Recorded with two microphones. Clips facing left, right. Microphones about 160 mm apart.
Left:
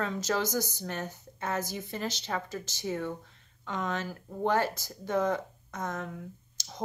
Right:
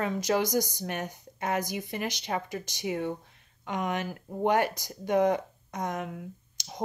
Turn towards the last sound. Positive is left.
turn(degrees=-15)  # may be behind; listen again after turning